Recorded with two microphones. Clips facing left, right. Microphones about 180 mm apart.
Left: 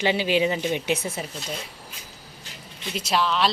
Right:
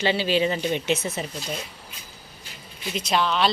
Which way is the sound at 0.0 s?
15° left (ahead or behind).